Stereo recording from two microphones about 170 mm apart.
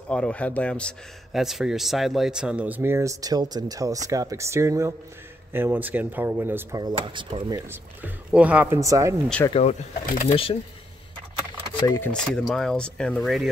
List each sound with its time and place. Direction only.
0.1 s a man's voice: 5° left (ahead or behind); by 6.8 s 10° right (ahead or behind)
6.8 s speech: 25° right (ahead or behind)
7.4 s speech: 20° right (ahead or behind)
8.0 s a man's voice: 10° right (ahead or behind)
9.5 s speech: 40° left (ahead or behind)
11.8 s speech: 20° left (ahead or behind)
12.1 s speech: 5° left (ahead or behind)